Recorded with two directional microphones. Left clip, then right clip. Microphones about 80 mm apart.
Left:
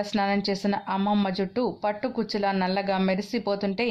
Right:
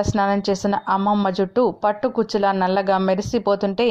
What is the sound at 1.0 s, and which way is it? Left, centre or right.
Speech, centre.